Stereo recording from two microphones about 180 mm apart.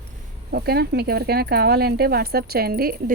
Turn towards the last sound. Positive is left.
turn(degrees=-55)  # may be behind; listen again after turning